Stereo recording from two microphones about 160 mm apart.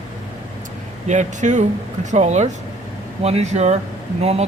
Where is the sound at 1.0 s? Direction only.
50° right (ahead or behind).